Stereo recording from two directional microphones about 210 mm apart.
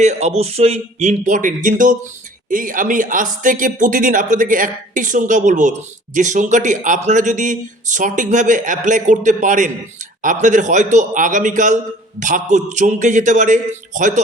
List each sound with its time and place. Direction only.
0.0 s speech: 35° right (ahead or behind)